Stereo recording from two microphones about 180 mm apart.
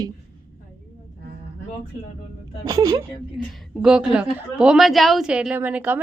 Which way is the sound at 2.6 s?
20° right (ahead or behind).